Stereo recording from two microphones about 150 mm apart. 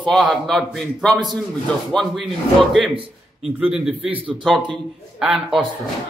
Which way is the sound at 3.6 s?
5° right (ahead or behind).